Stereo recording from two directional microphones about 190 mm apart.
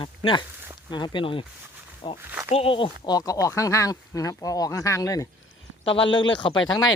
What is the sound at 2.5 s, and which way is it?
Speech, 30° left (ahead or behind).